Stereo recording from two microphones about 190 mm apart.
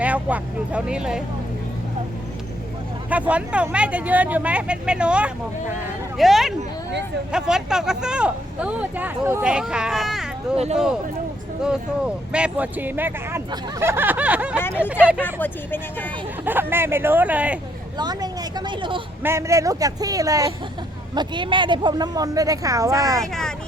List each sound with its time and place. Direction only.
0.0 s speech: 5° right (ahead or behind)
3.1 s speech: 5° right (ahead or behind)
11.6 s speech: 5° right (ahead or behind)
14.9 s speech: 10° left (ahead or behind)
16.5 s speech: 10° right (ahead or behind)
17.9 s speech: 20° right (ahead or behind)
19.2 s speech: 15° right (ahead or behind)
23.2 s speech: centre (ahead or behind)